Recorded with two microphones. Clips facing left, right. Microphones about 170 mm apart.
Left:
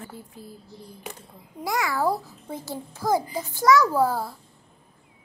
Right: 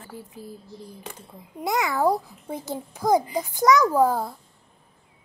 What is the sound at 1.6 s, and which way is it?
A child's voice, 20° right (ahead or behind).